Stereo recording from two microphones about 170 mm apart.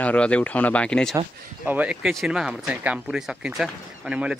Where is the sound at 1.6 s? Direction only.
5° right (ahead or behind).